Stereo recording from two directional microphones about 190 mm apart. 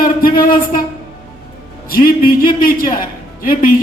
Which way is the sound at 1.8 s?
50° left (ahead or behind).